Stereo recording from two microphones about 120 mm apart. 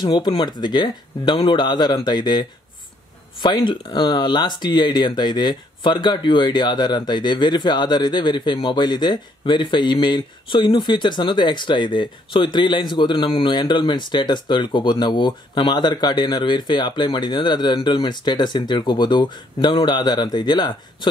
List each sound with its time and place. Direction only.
0.0 s speech: 40° left (ahead or behind)